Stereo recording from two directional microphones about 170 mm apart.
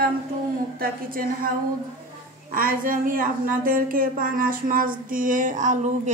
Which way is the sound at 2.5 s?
55° right (ahead or behind).